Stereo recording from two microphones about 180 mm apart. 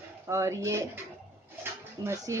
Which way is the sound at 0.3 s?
15° right (ahead or behind).